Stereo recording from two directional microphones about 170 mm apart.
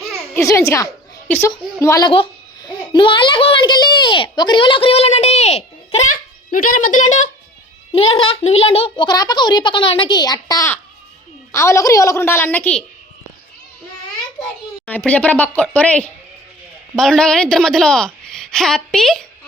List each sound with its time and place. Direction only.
0.3 s a child's voice: 15° left (ahead or behind); by 7.3 s 45° left (ahead or behind)
7.9 s a child's voice: 35° left (ahead or behind); by 12.8 s 10° left (ahead or behind)
14.8 s a woman's voice: 10° left (ahead or behind)